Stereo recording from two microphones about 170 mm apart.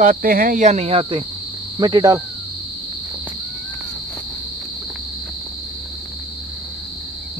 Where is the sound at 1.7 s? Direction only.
25° right (ahead or behind).